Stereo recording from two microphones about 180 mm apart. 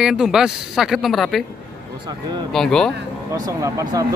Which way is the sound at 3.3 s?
20° right (ahead or behind).